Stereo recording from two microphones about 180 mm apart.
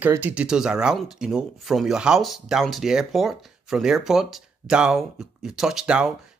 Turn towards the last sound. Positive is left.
turn(degrees=-5)  # may be behind; listen again after turning